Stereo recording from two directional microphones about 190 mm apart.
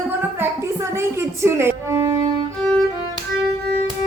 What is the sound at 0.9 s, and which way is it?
Speech, 15° right (ahead or behind).